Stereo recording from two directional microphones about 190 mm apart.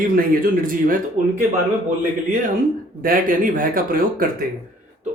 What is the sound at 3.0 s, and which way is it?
Speech, 45° right (ahead or behind).